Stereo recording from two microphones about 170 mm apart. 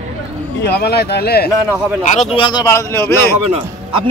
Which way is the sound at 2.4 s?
20° left (ahead or behind).